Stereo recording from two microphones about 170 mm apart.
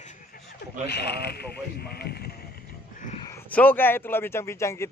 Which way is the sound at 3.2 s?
15° left (ahead or behind).